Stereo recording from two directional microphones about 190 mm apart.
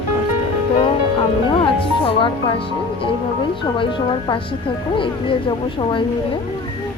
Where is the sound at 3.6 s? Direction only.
25° left (ahead or behind).